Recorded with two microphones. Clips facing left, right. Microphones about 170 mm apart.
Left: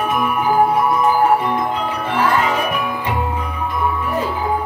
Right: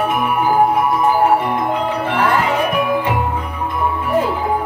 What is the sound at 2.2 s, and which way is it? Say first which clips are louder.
Music: even; 60° right (ahead or behind).